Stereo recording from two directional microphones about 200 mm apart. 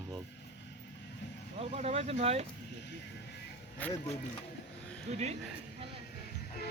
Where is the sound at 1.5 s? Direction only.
30° right (ahead or behind).